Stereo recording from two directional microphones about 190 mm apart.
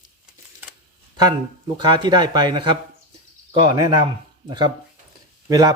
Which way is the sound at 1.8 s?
20° right (ahead or behind).